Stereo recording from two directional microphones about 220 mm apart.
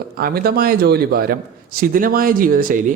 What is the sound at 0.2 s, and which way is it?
A man's voice, 40° right (ahead or behind).